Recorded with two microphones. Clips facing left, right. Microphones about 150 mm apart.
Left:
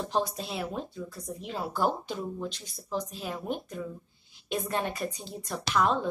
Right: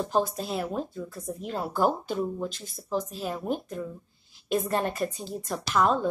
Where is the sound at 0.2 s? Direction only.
Centre (ahead or behind).